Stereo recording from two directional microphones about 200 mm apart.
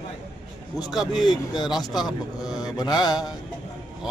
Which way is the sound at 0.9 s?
Centre (ahead or behind).